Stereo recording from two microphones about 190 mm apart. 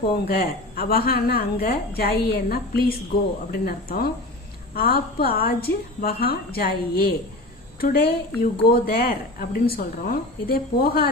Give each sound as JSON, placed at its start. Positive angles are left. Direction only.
{"t": 0.0, "sound": "speech", "side_deg": 55}